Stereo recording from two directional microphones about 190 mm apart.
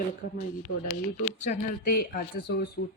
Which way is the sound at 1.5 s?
45° left (ahead or behind).